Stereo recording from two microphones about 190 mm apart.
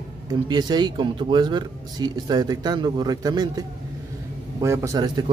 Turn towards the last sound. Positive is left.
turn(degrees=-15)  # may be behind; listen again after turning